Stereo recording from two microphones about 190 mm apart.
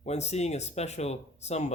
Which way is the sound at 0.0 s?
35° left (ahead or behind).